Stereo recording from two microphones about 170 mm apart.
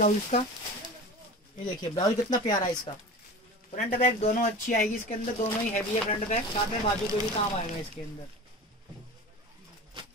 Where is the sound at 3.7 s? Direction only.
45° left (ahead or behind).